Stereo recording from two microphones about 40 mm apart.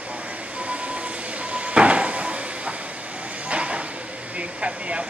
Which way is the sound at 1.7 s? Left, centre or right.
Right.